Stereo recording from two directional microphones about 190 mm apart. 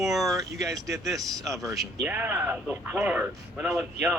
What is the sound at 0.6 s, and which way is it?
Speech, 15° right (ahead or behind).